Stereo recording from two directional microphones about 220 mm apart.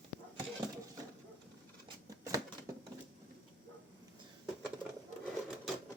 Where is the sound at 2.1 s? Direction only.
15° right (ahead or behind).